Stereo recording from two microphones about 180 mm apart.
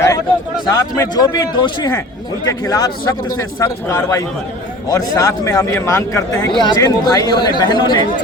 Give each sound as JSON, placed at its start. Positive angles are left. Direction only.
{"t": 0.6, "sound": "speech", "side_deg": 20}